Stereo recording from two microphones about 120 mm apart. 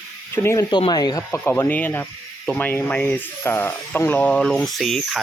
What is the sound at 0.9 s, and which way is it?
Speech, 35° left (ahead or behind).